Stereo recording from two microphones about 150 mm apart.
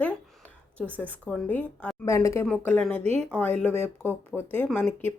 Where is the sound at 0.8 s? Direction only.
10° left (ahead or behind).